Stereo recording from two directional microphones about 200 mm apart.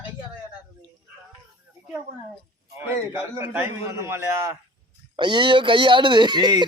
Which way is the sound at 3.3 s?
15° right (ahead or behind).